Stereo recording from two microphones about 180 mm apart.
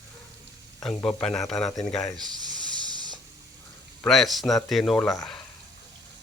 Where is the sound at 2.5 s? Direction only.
25° right (ahead or behind).